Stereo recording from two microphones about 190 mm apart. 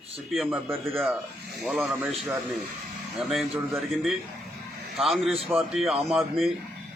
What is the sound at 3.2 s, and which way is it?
A man's voice, centre (ahead or behind).